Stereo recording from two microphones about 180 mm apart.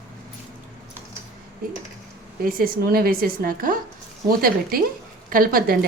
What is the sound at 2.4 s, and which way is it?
A woman's voice, 55° right (ahead or behind).